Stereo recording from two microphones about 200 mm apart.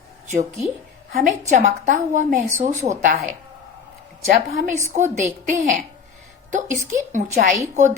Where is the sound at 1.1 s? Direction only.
35° right (ahead or behind).